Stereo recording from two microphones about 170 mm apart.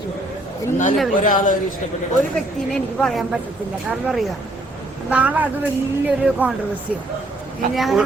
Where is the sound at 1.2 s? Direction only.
50° left (ahead or behind).